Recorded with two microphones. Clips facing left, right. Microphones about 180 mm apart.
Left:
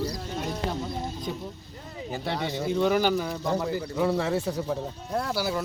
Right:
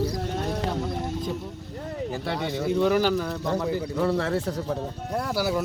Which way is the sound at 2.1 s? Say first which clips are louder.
Left 1 dB; centre (ahead or behind).